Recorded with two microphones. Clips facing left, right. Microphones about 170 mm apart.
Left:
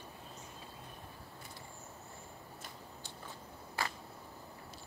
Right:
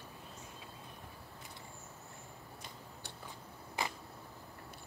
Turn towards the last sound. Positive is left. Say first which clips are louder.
# even
turn(degrees=-20)  # may be behind; listen again after turning